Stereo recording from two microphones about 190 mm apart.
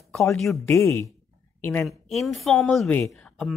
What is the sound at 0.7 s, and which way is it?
A woman's voice, 15° left (ahead or behind).